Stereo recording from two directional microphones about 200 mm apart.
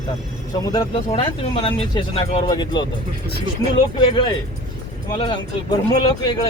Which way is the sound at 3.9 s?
20° left (ahead or behind).